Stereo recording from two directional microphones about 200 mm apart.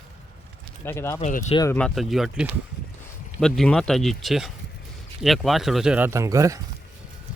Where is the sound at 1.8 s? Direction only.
Centre (ahead or behind); by 6.6 s 15° right (ahead or behind).